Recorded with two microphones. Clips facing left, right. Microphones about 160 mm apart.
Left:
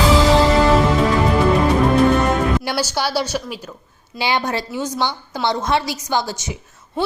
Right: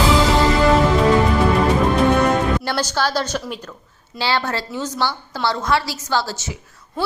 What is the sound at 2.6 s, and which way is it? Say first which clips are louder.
A woman's voice: even; 10° left (ahead or behind).